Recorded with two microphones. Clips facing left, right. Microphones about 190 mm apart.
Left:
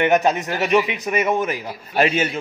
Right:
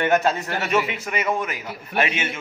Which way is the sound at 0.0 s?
20° left (ahead or behind).